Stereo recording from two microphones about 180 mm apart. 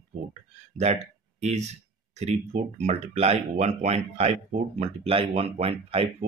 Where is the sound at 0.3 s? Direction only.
40° right (ahead or behind).